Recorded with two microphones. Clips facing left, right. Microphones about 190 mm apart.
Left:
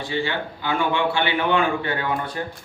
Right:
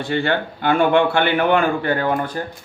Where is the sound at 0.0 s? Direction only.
60° right (ahead or behind).